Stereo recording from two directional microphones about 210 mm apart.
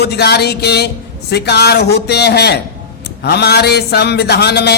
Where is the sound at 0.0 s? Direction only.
50° left (ahead or behind).